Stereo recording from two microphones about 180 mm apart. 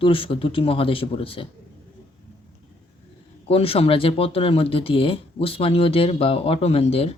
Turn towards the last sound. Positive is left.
turn(degrees=35)  # may be behind; listen again after turning